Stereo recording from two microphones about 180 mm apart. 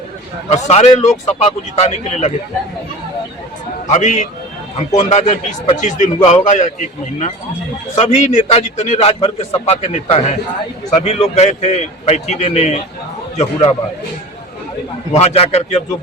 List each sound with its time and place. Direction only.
0.5 s a man's voice: 40° left (ahead or behind)
3.8 s a man's voice: 40° left (ahead or behind)
15.1 s a man's voice: 35° left (ahead or behind)